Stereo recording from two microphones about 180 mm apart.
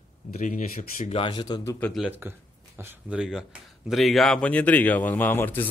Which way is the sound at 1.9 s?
Centre (ahead or behind).